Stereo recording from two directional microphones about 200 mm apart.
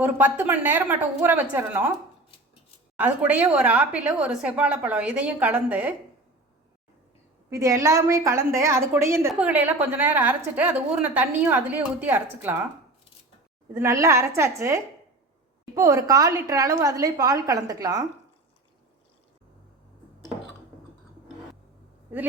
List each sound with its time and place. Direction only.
0.0 s a woman's voice: 10° right (ahead or behind)
3.0 s a woman's voice: 5° right (ahead or behind)
7.5 s a woman's voice: 15° right (ahead or behind)
13.7 s a woman's voice: 15° right (ahead or behind)